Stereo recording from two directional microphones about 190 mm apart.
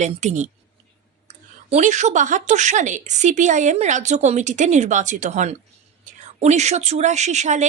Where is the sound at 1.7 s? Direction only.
40° right (ahead or behind).